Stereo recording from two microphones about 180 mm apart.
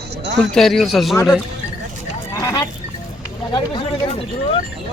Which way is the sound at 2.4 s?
20° left (ahead or behind).